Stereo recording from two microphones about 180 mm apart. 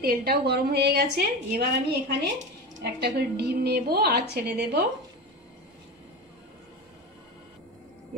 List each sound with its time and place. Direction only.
0.0 s a woman's voice: 60° right (ahead or behind)